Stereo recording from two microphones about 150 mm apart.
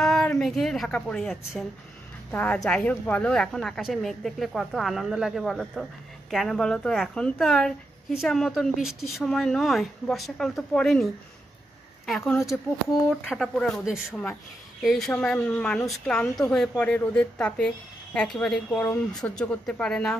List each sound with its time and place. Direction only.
0.0 s a woman's voice: 5° left (ahead or behind)
12.1 s a woman's voice: centre (ahead or behind)